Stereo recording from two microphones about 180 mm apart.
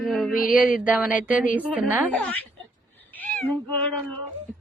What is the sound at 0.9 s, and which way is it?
A woman's voice, 10° right (ahead or behind).